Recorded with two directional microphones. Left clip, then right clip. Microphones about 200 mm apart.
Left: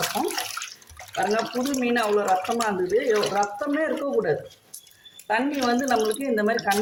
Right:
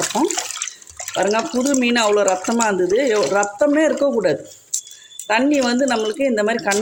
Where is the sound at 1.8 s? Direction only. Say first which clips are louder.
Right 5 dB; 45° right (ahead or behind).